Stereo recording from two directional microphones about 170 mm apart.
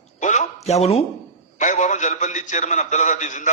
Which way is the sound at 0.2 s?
45° left (ahead or behind).